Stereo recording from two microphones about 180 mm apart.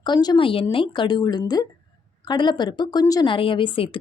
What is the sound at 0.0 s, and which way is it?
Speech, 25° left (ahead or behind).